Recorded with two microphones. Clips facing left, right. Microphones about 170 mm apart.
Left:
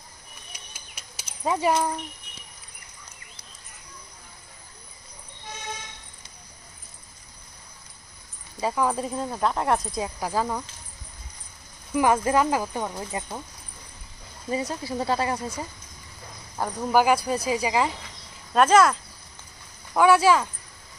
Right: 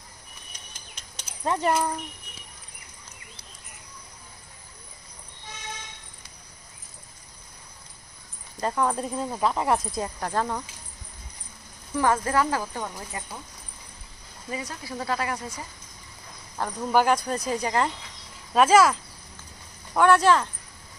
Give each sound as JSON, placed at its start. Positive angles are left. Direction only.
{"t": 0.5, "sound": "a sound", "side_deg": 5}
{"t": 8.5, "sound": "speech", "side_deg": 5}
{"t": 11.9, "sound": "speech", "side_deg": 15}
{"t": 14.5, "sound": "speech", "side_deg": 25}
{"t": 16.5, "sound": "speech", "side_deg": 10}